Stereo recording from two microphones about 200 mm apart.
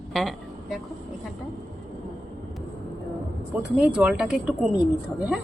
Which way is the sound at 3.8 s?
5° right (ahead or behind).